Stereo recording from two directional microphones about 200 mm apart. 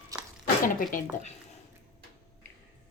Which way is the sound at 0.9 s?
40° left (ahead or behind).